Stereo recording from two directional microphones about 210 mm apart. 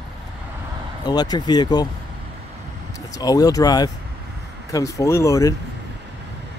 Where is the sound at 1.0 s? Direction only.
20° left (ahead or behind).